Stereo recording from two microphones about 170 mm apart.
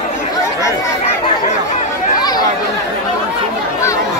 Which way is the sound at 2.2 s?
25° left (ahead or behind).